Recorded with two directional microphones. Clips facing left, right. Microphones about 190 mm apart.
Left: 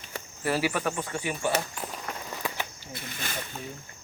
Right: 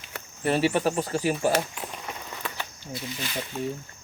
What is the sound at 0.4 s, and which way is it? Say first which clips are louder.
Speech: right 4 dB; 25° right (ahead or behind).